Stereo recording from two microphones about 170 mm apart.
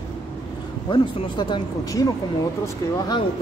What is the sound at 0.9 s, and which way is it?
Speech, 30° left (ahead or behind).